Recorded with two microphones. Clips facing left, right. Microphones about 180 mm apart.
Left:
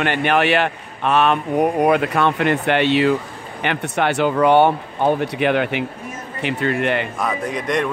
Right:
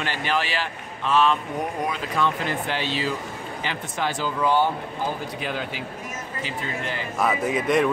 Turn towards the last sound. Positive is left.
turn(degrees=-5)  # may be behind; listen again after turning